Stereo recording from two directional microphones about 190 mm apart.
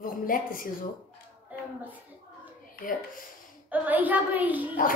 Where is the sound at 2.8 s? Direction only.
45° left (ahead or behind).